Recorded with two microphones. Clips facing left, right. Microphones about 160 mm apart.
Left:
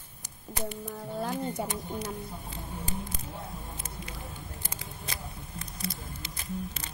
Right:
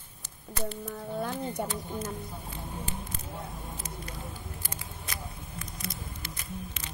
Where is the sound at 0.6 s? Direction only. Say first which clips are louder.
Right 1 dB; 15° left (ahead or behind).